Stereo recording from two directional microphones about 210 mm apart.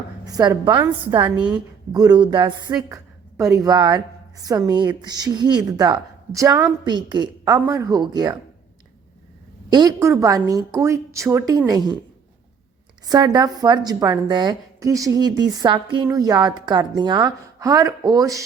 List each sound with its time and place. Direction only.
0.3 s speech: 20° right (ahead or behind)
9.6 s a woman's voice: 20° right (ahead or behind)
13.1 s a woman's voice: 20° right (ahead or behind)